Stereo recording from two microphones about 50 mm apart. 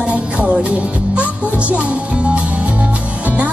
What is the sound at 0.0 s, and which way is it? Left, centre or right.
Music, right.